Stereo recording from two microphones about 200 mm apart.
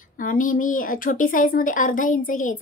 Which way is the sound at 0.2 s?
45° left (ahead or behind).